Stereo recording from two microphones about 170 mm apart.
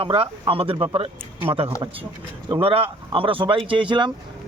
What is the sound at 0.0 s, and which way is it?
Speech, 30° right (ahead or behind).